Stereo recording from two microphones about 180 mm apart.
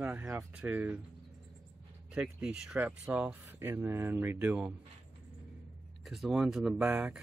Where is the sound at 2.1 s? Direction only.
5° right (ahead or behind).